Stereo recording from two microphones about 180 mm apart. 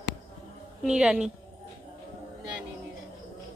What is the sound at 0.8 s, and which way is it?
Speech, 5° right (ahead or behind).